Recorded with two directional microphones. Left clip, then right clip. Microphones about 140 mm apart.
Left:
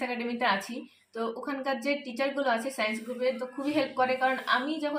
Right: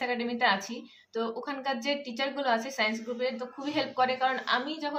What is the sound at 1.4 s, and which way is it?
Speech, 40° right (ahead or behind).